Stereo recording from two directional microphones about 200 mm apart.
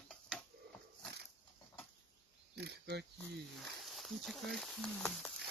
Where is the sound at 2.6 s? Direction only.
55° right (ahead or behind).